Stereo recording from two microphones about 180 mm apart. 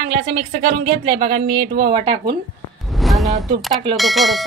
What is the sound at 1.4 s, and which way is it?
Speech, 60° right (ahead or behind).